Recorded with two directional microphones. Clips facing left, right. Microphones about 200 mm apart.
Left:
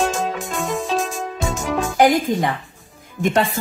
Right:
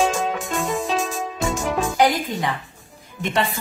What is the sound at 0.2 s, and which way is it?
Music, centre (ahead or behind).